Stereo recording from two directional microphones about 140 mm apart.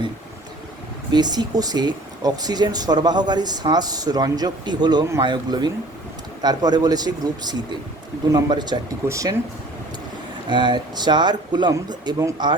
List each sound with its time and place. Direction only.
1.1 s speech: 30° right (ahead or behind)
10.5 s speech: 35° right (ahead or behind)